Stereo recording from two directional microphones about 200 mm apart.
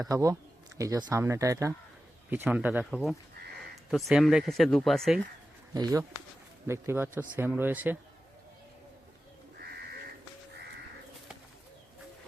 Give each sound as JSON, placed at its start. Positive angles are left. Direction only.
{"t": 0.0, "sound": "speech", "side_deg": -15}
{"t": 5.7, "sound": "speech", "side_deg": -20}